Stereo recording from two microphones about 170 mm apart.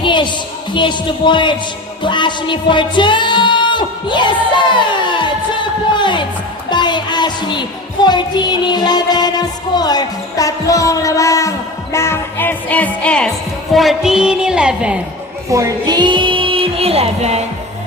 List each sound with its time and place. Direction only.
0.0 s a sound: 30° left (ahead or behind)
2.0 s music: 25° left (ahead or behind); by 13.3 s 5° left (ahead or behind)
13.7 s a woman's voice: centre (ahead or behind)
15.4 s music: 20° right (ahead or behind); by 17.4 s 40° right (ahead or behind)